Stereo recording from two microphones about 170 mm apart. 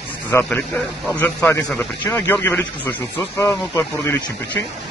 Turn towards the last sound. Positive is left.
turn(degrees=15)  # may be behind; listen again after turning